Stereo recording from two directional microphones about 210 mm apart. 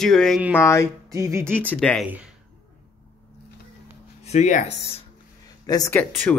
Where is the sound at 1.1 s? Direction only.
15° right (ahead or behind).